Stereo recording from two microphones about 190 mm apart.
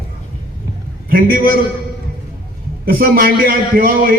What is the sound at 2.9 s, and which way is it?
A man's voice, 50° right (ahead or behind).